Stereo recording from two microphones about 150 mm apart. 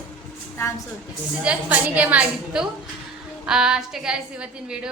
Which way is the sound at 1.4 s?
10° right (ahead or behind).